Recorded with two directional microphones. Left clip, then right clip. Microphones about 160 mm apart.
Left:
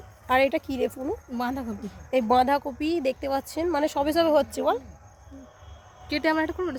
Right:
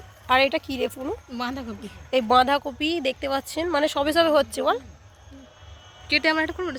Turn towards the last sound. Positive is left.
turn(degrees=30)  # may be behind; listen again after turning